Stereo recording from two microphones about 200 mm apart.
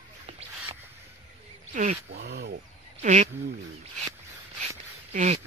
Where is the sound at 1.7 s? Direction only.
35° right (ahead or behind).